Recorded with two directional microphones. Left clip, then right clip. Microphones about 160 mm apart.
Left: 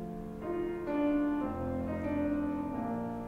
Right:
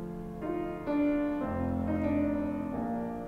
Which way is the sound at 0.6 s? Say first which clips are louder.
Right 1 dB; 30° right (ahead or behind).